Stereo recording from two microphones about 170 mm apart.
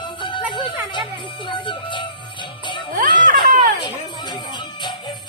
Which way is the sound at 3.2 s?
55° right (ahead or behind).